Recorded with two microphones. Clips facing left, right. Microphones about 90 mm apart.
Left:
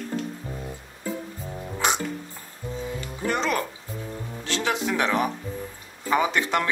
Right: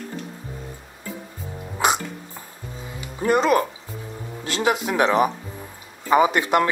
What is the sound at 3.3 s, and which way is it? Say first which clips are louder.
Speech: right 8 dB; 10° right (ahead or behind).